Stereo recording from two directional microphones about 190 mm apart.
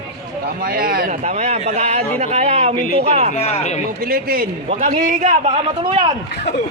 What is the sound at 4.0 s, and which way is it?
A man's voice, 50° right (ahead or behind).